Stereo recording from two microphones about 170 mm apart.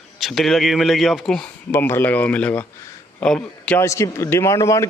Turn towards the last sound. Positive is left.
turn(degrees=20)  # may be behind; listen again after turning